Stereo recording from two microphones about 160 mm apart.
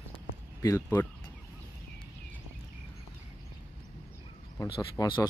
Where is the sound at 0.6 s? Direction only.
20° left (ahead or behind).